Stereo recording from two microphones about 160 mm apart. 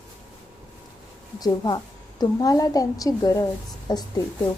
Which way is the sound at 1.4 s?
25° left (ahead or behind).